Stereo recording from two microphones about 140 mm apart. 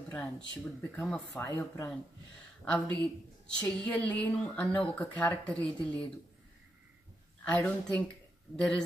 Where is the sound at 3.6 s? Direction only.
10° left (ahead or behind).